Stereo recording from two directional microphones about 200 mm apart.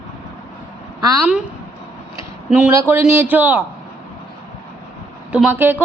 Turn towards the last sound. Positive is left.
turn(degrees=-10)  # may be behind; listen again after turning